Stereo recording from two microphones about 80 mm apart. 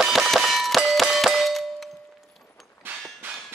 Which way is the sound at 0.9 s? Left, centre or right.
Centre.